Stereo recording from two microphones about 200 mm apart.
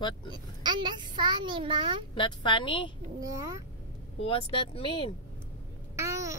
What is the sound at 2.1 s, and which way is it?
Speech, 25° left (ahead or behind).